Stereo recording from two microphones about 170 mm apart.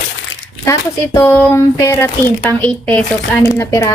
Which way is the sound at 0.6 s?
15° left (ahead or behind).